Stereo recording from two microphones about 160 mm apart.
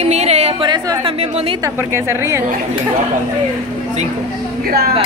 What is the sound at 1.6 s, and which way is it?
Speech, 15° right (ahead or behind).